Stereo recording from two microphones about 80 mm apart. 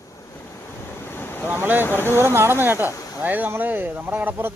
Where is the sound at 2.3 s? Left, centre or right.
Right.